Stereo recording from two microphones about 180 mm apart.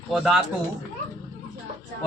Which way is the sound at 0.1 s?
Centre (ahead or behind).